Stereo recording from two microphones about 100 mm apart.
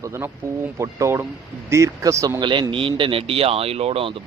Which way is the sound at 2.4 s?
50° right (ahead or behind).